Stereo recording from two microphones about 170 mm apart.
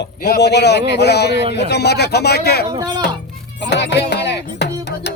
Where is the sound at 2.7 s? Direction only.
25° right (ahead or behind).